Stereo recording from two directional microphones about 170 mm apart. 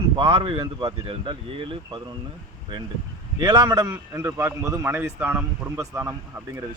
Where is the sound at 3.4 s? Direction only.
25° right (ahead or behind).